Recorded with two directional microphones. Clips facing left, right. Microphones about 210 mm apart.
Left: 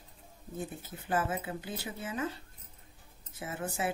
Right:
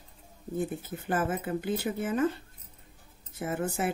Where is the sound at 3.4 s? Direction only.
50° right (ahead or behind).